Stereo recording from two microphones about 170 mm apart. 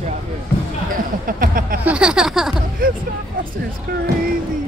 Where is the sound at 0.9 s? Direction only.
55° right (ahead or behind).